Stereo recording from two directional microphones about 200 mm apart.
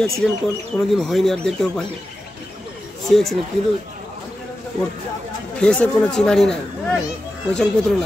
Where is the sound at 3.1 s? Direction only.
Centre (ahead or behind).